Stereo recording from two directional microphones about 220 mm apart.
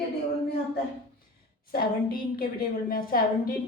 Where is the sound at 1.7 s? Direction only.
40° left (ahead or behind).